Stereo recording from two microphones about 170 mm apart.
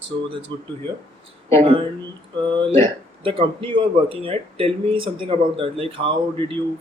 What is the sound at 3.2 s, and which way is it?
Speech, 30° right (ahead or behind).